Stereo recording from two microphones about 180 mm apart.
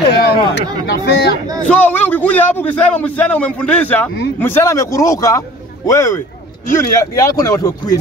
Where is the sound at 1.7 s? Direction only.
10° left (ahead or behind).